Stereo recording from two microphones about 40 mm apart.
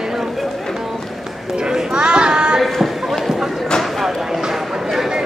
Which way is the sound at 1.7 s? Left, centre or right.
Right.